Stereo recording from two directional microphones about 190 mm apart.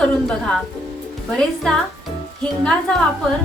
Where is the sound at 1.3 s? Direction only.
5° left (ahead or behind).